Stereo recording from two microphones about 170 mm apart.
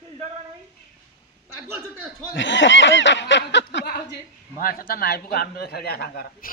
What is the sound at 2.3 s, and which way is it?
Speech, 90° left.